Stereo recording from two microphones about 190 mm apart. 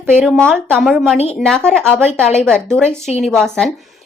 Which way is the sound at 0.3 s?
5° left (ahead or behind).